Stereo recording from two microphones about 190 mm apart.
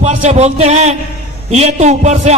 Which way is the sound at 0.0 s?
35° right (ahead or behind).